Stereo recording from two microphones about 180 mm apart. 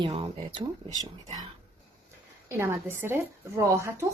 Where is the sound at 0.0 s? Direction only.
30° right (ahead or behind).